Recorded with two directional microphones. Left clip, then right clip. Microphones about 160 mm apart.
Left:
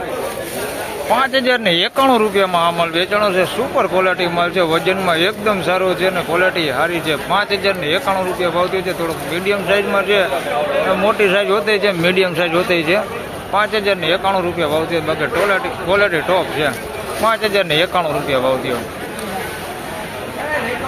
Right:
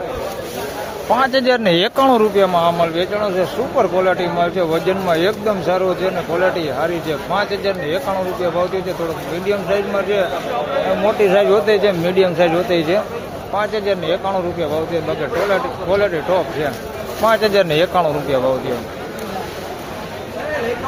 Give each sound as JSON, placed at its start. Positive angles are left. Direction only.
{"t": 1.1, "sound": "speech", "side_deg": -20}
{"t": 17.2, "sound": "speech", "side_deg": -20}